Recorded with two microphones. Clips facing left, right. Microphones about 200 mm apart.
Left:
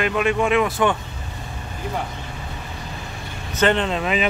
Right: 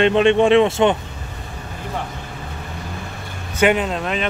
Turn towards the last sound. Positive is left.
turn(degrees=5)  # may be behind; listen again after turning